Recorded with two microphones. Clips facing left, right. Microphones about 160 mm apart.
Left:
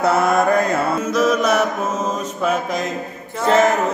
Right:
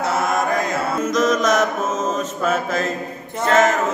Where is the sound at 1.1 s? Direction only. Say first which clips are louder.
Left 1 dB; 10° left (ahead or behind).